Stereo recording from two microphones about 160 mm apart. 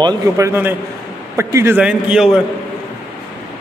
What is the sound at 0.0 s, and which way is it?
Speech, 25° right (ahead or behind).